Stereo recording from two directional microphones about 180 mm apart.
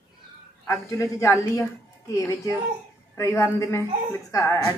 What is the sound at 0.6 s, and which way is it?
A woman's voice, 15° left (ahead or behind).